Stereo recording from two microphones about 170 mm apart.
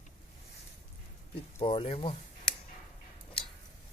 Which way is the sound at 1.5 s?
35° left (ahead or behind).